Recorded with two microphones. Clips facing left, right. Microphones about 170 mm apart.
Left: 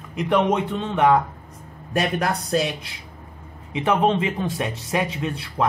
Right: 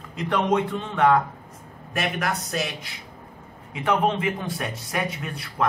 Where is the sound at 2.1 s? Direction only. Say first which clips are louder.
Left 5 dB; 30° left (ahead or behind).